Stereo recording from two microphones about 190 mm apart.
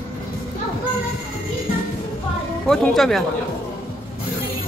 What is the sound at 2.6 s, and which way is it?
Speech, centre (ahead or behind).